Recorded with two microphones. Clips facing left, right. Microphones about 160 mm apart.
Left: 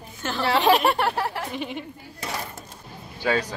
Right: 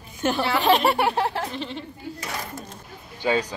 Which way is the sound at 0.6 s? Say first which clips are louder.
Right 1 dB; centre (ahead or behind).